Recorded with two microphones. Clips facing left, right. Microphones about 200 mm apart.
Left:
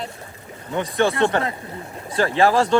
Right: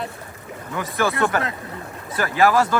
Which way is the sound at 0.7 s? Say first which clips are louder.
Left 3 dB; 25° left (ahead or behind).